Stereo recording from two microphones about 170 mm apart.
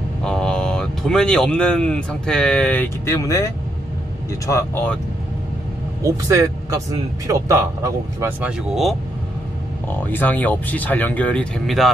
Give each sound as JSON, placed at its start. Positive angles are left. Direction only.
{"t": 0.2, "sound": "speech", "side_deg": 5}
{"t": 6.0, "sound": "speech", "side_deg": -20}
{"t": 9.8, "sound": "speech", "side_deg": 10}